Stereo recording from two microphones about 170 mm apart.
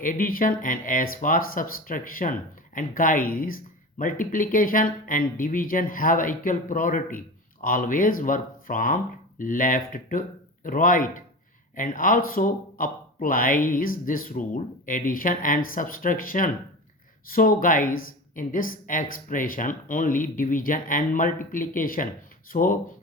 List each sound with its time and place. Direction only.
0.0 s speech: 55° left (ahead or behind)